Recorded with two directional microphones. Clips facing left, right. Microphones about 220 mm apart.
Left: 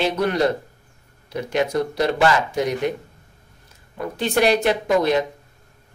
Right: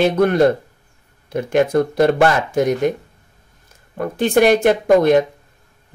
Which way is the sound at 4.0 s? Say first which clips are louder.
Right 5 dB; 50° right (ahead or behind).